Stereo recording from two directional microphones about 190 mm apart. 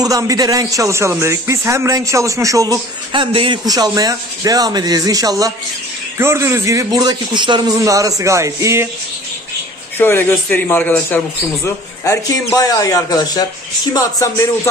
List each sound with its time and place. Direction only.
0.0 s a man's voice: 20° right (ahead or behind)
9.9 s a man's voice: 10° left (ahead or behind)